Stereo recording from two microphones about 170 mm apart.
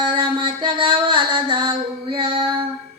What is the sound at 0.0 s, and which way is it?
Music, 30° right (ahead or behind).